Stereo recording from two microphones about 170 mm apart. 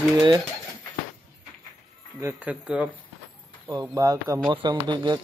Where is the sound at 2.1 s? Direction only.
15° right (ahead or behind).